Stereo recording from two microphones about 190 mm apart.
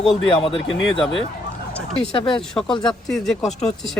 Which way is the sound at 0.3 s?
25° left (ahead or behind).